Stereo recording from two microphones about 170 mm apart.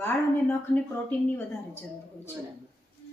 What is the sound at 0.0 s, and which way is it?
Speech, 10° left (ahead or behind).